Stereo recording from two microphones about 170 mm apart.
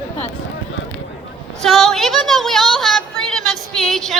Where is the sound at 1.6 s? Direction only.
Centre (ahead or behind).